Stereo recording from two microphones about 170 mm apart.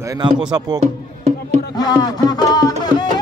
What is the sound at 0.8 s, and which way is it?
Music, 40° right (ahead or behind).